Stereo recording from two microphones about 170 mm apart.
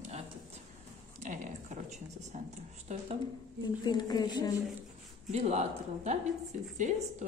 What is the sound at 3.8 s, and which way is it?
Speech, 25° left (ahead or behind).